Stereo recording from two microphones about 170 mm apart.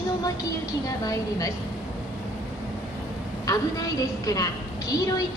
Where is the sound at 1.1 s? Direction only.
20° left (ahead or behind).